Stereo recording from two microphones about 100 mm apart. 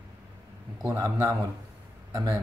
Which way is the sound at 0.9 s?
35° right (ahead or behind).